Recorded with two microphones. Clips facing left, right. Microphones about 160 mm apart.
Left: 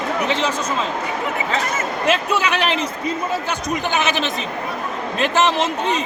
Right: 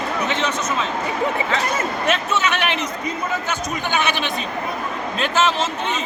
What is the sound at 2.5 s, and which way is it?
Speech, 35° left (ahead or behind).